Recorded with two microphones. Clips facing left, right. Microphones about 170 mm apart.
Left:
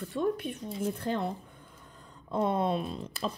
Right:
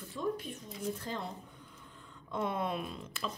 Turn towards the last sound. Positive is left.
turn(degrees=35)  # may be behind; listen again after turning